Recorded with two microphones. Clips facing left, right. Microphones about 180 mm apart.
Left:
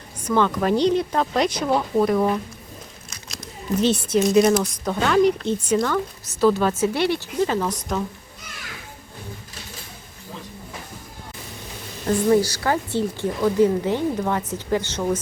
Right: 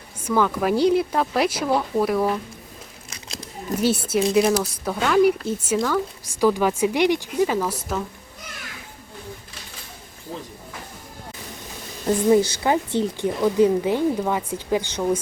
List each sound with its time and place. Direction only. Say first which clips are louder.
0.2 s speech: left 1 dB; 5° right (ahead or behind)
3.8 s speech: left 1 dB; 10° right (ahead or behind)
12.0 s speech: right 1 dB; 20° right (ahead or behind)